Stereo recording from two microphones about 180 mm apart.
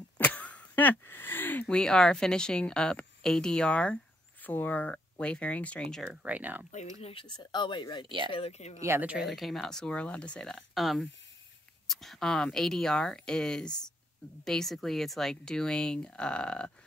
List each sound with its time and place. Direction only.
0.2 s speech: 10° left (ahead or behind)
6.2 s speech: 10° right (ahead or behind)
7.0 s speech: 30° left (ahead or behind)
8.8 s speech: 10° right (ahead or behind); by 16.7 s 5° left (ahead or behind)